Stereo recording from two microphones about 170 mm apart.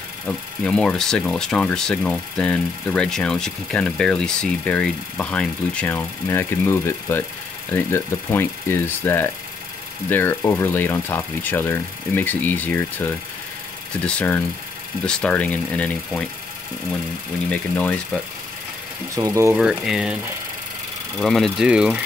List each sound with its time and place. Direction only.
0.3 s speech: 5° left (ahead or behind)
17.5 s speech: 5° left (ahead or behind)
19.1 s speech: 20° right (ahead or behind)
19.6 s speech: centre (ahead or behind)
21.2 s speech: centre (ahead or behind)